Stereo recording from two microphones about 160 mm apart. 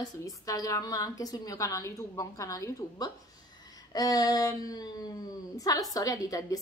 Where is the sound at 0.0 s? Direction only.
20° left (ahead or behind).